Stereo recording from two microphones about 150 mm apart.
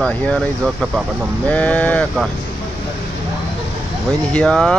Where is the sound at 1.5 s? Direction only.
10° left (ahead or behind).